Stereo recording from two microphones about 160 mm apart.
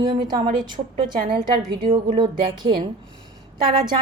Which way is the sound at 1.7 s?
30° right (ahead or behind).